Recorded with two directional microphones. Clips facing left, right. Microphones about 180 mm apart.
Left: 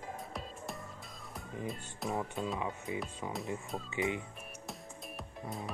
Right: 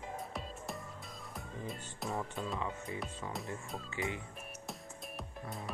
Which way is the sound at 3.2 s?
15° left (ahead or behind).